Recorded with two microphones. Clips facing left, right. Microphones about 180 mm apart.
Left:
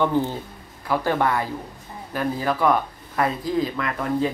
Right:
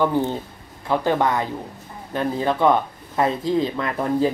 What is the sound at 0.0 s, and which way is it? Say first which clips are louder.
A man's voice: right 1 dB; 15° right (ahead or behind).